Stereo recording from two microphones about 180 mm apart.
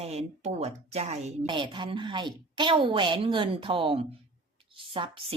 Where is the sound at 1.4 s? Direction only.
25° right (ahead or behind).